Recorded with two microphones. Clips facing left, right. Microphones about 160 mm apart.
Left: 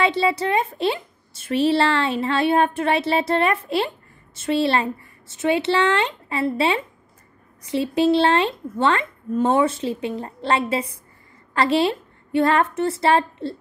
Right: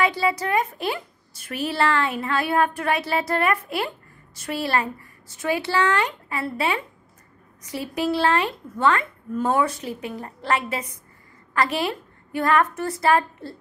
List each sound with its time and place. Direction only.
0.0 s a woman's voice: 25° left (ahead or behind)